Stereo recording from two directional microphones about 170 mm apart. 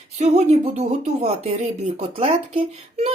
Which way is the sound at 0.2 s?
40° right (ahead or behind).